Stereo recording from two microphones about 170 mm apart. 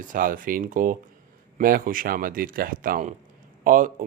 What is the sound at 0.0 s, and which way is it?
Speech, 55° right (ahead or behind).